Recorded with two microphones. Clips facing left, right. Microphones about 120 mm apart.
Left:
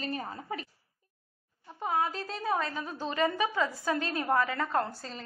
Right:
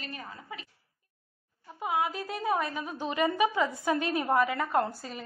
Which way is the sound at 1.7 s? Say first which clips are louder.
Even; 10° right (ahead or behind).